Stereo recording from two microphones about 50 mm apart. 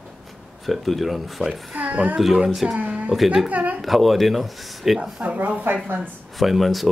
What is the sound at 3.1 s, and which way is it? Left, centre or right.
Speech, centre.